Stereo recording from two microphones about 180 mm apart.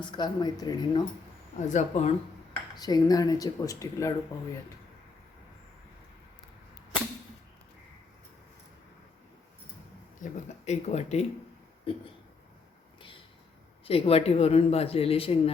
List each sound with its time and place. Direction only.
0.0 s speech: 25° left (ahead or behind)
1.6 s speech: 40° left (ahead or behind)
2.5 s speech: 20° left (ahead or behind)
10.7 s speech: 40° left (ahead or behind)
13.8 s speech: 30° left (ahead or behind)